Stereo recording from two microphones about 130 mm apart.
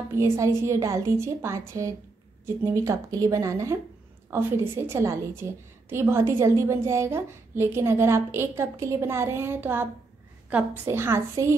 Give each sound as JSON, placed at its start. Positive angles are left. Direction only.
{"t": 0.1, "sound": "a woman's voice", "side_deg": -20}